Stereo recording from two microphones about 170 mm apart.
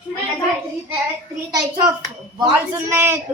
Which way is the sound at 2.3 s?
15° right (ahead or behind).